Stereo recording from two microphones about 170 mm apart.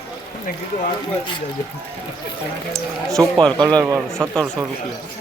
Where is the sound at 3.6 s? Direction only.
20° right (ahead or behind).